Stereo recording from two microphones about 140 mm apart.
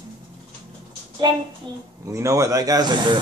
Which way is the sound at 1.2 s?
35° right (ahead or behind).